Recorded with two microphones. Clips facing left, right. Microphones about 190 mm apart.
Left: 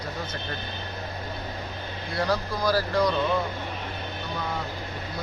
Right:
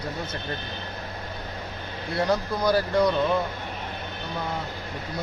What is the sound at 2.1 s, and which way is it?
Speech, 25° right (ahead or behind).